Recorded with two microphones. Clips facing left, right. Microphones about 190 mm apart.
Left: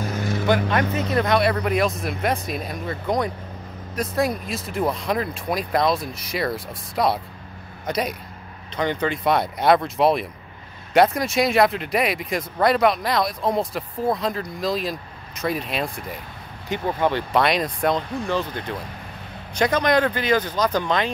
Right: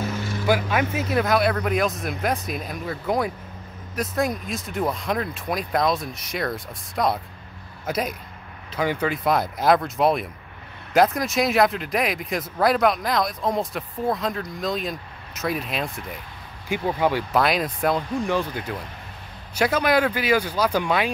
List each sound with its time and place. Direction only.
0.0 s vehicle: 50° left (ahead or behind)
0.5 s speech: 5° right (ahead or behind)